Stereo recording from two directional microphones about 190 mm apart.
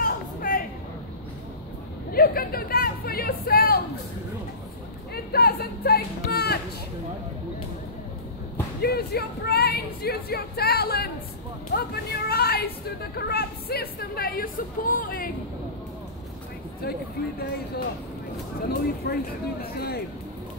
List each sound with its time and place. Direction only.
0.0 s a sound: 45° left (ahead or behind)
2.1 s speech: 50° left (ahead or behind)
5.1 s speech: 55° left (ahead or behind)
8.8 s speech: 55° left (ahead or behind)
17.2 s speech: 50° left (ahead or behind)
18.7 s speech: 55° left (ahead or behind)